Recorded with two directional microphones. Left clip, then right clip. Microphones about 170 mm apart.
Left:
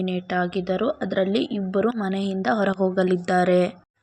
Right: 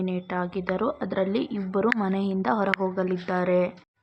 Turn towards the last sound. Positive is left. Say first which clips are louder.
# left 4 dB
turn(degrees=25)  # may be behind; listen again after turning